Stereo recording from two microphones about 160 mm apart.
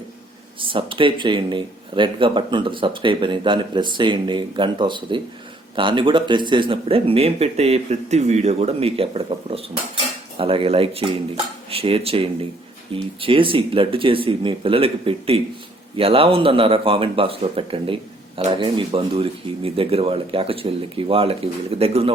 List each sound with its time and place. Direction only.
0.6 s a man's voice: 35° right (ahead or behind)